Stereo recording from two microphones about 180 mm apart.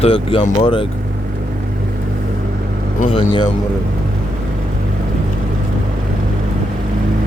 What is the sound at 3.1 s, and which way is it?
Speech, 25° left (ahead or behind).